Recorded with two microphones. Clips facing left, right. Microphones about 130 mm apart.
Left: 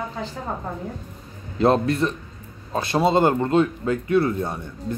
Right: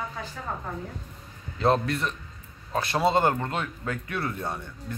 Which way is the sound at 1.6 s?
35° left (ahead or behind).